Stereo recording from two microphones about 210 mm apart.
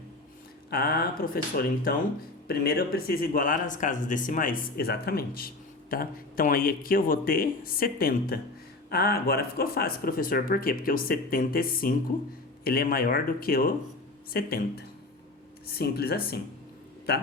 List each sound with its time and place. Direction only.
0.7 s speech: 50° left (ahead or behind)